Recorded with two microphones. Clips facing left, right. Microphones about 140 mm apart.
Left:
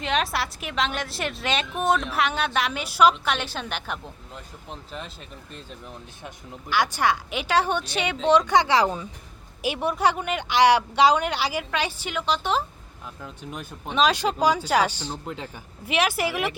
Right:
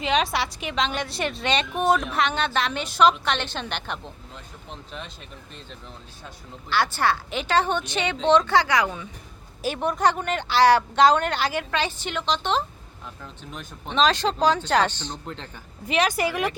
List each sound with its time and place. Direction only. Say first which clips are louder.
0.0 s a woman's voice: right 2 dB; centre (ahead or behind)
6.2 s speech: left 1 dB; 15° left (ahead or behind)
8.6 s speech: left 2 dB; 30° left (ahead or behind)
9.6 s speech: even; 10° left (ahead or behind)